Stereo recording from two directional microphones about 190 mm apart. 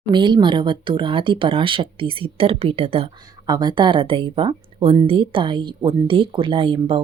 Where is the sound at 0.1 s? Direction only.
25° right (ahead or behind).